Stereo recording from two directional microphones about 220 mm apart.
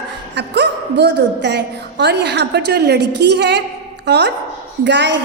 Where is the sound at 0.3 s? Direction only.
50° right (ahead or behind).